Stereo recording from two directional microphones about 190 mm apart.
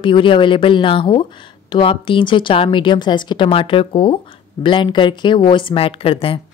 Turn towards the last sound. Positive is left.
turn(degrees=30)  # may be behind; listen again after turning